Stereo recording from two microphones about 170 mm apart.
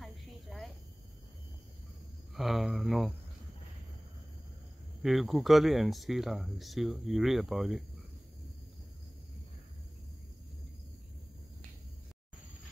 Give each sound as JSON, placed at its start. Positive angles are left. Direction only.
{"t": 0.0, "sound": "cricket", "side_deg": 0}
{"t": 2.3, "sound": "speech", "side_deg": 0}
{"t": 5.0, "sound": "speech", "side_deg": 0}